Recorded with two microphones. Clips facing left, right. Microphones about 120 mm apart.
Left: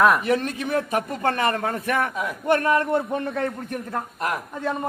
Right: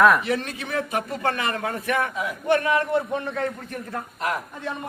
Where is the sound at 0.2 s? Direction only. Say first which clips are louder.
Left 3 dB; 45° left (ahead or behind).